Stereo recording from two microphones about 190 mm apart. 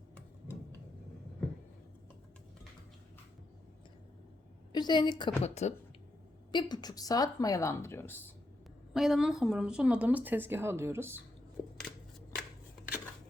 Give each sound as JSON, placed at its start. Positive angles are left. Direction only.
{"t": 4.7, "sound": "a woman's voice", "side_deg": 20}
{"t": 5.4, "sound": "speech", "side_deg": 35}
{"t": 6.5, "sound": "speech", "side_deg": 25}
{"t": 8.9, "sound": "speech", "side_deg": 0}
{"t": 11.6, "sound": "a sound", "side_deg": 15}